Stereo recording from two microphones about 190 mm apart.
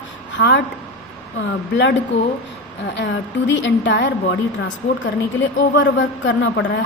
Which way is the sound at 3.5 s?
70° left (ahead or behind).